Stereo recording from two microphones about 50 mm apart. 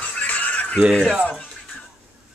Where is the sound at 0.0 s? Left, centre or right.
Left.